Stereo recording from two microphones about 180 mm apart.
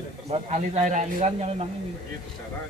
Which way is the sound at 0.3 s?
40° right (ahead or behind).